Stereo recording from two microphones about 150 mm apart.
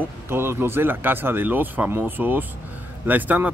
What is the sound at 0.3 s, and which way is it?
Speech, 15° right (ahead or behind).